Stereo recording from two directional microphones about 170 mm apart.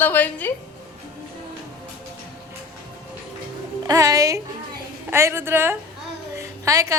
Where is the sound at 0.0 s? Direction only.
10° left (ahead or behind).